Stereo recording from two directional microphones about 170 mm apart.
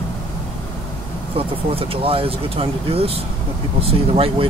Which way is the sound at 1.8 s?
35° right (ahead or behind).